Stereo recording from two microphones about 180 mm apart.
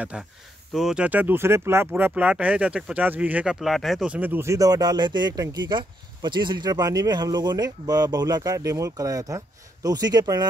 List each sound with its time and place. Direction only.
0.1 s speech: 5° right (ahead or behind); by 10.4 s 20° right (ahead or behind)